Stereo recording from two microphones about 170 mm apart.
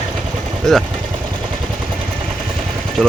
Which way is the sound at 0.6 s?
5° left (ahead or behind).